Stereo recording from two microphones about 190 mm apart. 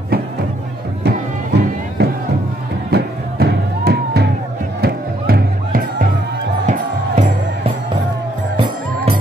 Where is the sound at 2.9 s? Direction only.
55° right (ahead or behind).